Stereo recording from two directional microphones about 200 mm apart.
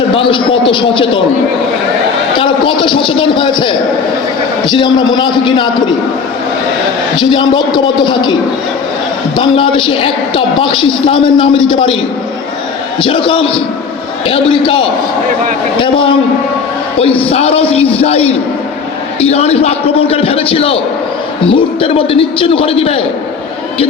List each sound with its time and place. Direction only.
0.1 s a sound: 25° left (ahead or behind)
2.4 s a sound: 25° left (ahead or behind)
4.7 s a man's voice: 20° left (ahead or behind)
7.2 s a man's voice: 25° left (ahead or behind)
9.4 s a man's voice: 25° left (ahead or behind)
13.0 s a man's voice: 25° left (ahead or behind)
15.8 s a man's voice: 25° left (ahead or behind)